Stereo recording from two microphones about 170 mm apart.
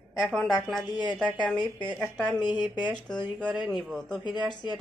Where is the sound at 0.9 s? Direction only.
25° left (ahead or behind).